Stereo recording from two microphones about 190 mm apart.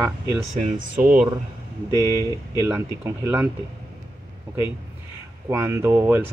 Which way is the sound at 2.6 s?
15° right (ahead or behind).